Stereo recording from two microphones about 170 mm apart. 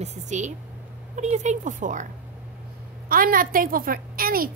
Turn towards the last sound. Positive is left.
turn(degrees=-60)  # may be behind; listen again after turning